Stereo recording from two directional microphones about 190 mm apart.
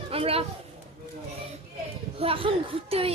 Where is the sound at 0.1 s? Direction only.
30° right (ahead or behind).